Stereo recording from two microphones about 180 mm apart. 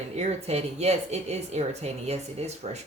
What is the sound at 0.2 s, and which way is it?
A woman's voice, 40° right (ahead or behind).